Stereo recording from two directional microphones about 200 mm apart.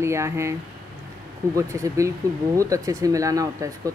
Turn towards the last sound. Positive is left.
turn(degrees=-15)  # may be behind; listen again after turning